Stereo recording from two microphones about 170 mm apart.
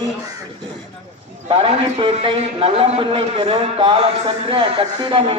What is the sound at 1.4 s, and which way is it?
A man's voice, 35° right (ahead or behind).